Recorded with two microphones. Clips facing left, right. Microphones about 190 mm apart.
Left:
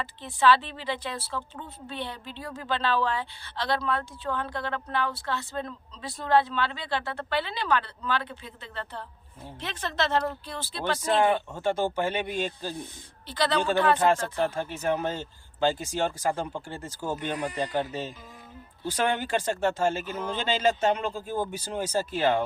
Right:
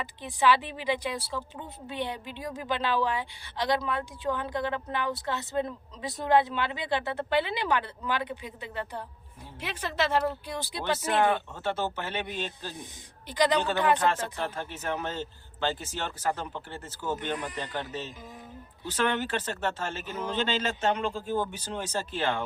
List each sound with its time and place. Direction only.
0.0 s a woman's voice: 15° right (ahead or behind)
11.3 s speech: 15° left (ahead or behind)
12.3 s speech: 45° left (ahead or behind)
12.7 s a woman's voice: 15° right (ahead or behind)
14.4 s speech: 10° left (ahead or behind)